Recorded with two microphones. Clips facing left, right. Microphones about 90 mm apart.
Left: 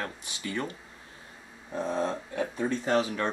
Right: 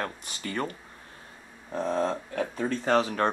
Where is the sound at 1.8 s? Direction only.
40° right (ahead or behind).